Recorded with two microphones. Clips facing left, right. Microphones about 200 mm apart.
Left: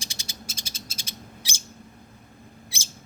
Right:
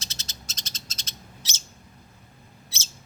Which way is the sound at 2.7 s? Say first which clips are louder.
Left 1 dB; 15° left (ahead or behind).